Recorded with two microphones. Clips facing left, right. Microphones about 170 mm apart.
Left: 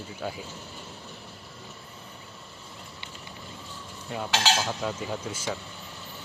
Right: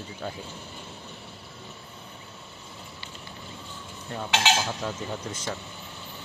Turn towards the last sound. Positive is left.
turn(degrees=0)  # may be behind; listen again after turning